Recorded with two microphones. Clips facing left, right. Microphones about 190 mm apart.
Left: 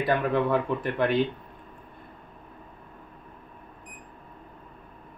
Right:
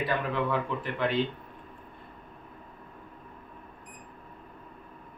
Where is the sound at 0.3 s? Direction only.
50° left (ahead or behind).